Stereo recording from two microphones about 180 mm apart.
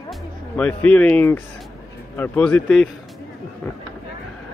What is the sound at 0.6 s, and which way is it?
Speech, 10° left (ahead or behind).